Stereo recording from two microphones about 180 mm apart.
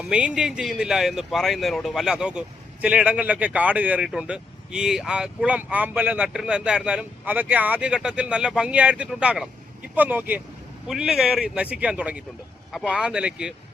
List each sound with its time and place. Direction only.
0.0 s speech: 5° right (ahead or behind)